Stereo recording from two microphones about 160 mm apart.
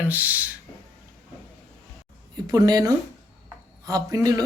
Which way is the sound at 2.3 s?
25° right (ahead or behind).